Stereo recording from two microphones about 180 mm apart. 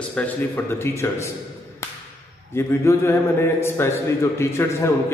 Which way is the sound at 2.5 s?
15° left (ahead or behind).